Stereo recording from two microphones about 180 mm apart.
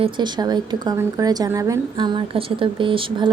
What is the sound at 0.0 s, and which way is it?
A woman's voice, 25° right (ahead or behind).